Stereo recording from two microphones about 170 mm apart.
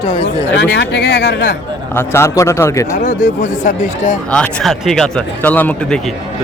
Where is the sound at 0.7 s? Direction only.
90° left.